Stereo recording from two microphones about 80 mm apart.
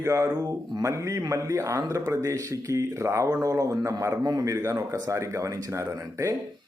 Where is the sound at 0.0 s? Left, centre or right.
Right.